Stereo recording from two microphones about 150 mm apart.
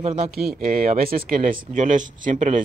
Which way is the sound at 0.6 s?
75° right (ahead or behind).